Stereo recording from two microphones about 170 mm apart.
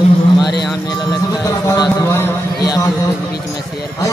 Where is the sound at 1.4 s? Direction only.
20° left (ahead or behind).